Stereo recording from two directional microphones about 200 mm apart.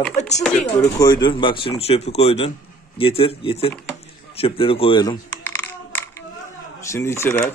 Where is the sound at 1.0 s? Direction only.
20° left (ahead or behind).